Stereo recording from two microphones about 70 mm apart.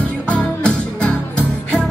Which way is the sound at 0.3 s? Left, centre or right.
Centre.